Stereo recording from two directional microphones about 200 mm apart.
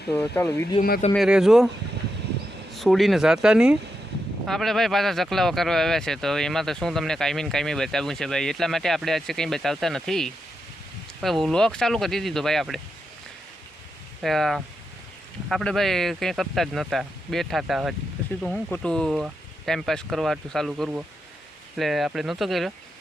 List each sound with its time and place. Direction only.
0.1 s speech: 10° left (ahead or behind)
0.8 s speech: 50° left (ahead or behind)
1.1 s speech: centre (ahead or behind)
2.7 s speech: centre (ahead or behind)
14.2 s speech: centre (ahead or behind)